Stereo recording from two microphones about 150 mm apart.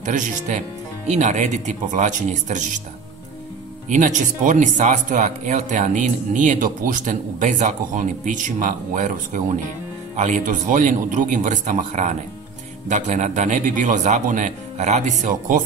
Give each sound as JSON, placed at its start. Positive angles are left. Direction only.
{"t": 0.0, "sound": "speech", "side_deg": -55}
{"t": 3.9, "sound": "a man's voice", "side_deg": -55}